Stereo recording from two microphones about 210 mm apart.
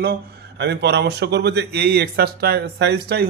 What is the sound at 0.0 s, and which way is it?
Speech, 50° right (ahead or behind).